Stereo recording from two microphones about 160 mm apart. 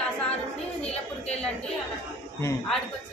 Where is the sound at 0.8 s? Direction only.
40° left (ahead or behind).